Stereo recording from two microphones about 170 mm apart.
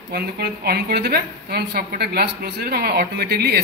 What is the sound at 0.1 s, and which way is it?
A woman's voice, 70° right (ahead or behind).